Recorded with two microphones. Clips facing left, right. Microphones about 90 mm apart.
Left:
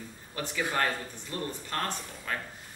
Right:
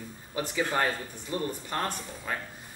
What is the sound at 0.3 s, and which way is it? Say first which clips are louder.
A man's voice: right 3 dB; 15° right (ahead or behind).